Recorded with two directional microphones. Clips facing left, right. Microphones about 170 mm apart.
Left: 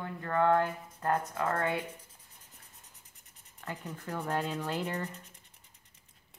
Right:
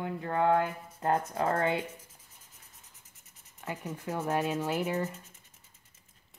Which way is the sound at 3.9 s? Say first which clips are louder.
Right 3 dB; 15° right (ahead or behind).